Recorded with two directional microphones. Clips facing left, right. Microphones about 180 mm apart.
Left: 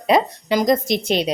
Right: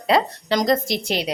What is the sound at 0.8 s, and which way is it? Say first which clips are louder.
Speech: left 4 dB; 20° left (ahead or behind).